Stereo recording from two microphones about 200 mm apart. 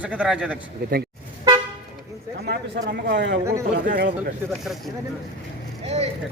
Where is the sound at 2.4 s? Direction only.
55° right (ahead or behind).